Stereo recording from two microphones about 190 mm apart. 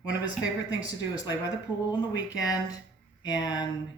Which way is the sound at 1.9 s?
20° left (ahead or behind).